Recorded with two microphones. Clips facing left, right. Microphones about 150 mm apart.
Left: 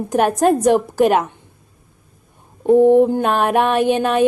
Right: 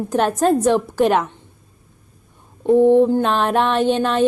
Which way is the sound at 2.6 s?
15° left (ahead or behind).